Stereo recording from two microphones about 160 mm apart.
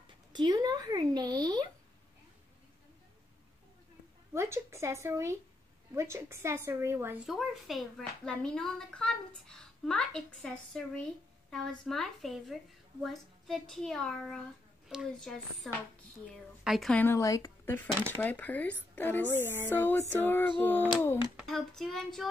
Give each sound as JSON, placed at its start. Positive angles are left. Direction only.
{"t": 0.3, "sound": "speech", "side_deg": -25}
{"t": 4.3, "sound": "a woman's voice", "side_deg": -15}
{"t": 7.2, "sound": "a woman's voice", "side_deg": 0}
{"t": 16.9, "sound": "speech", "side_deg": 15}
{"t": 19.2, "sound": "a woman's voice", "side_deg": -15}
{"t": 19.7, "sound": "speech", "side_deg": 10}
{"t": 21.4, "sound": "a woman's voice", "side_deg": 0}